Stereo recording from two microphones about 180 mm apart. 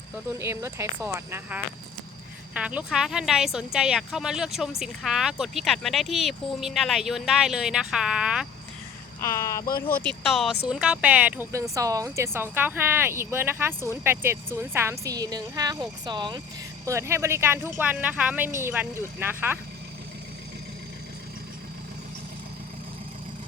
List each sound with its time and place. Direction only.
0.3 s speech: 15° right (ahead or behind)
9.2 s speech: 15° left (ahead or behind)
9.6 s speech: 55° left (ahead or behind)
10.0 s speech: 5° left (ahead or behind)